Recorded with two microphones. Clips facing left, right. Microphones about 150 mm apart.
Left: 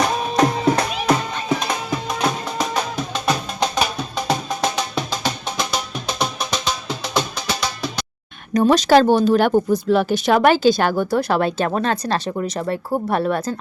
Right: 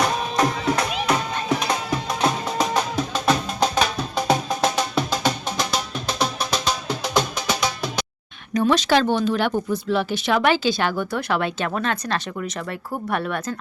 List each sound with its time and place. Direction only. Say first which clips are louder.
0.3 s music: left 5 dB; 40° left (ahead or behind)
2.6 s music: right 1 dB; centre (ahead or behind)
8.5 s speech: left 5 dB; 40° left (ahead or behind)